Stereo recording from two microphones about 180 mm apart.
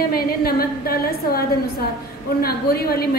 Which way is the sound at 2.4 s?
60° left (ahead or behind).